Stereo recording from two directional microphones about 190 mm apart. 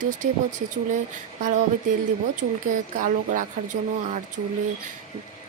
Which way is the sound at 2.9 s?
45° right (ahead or behind).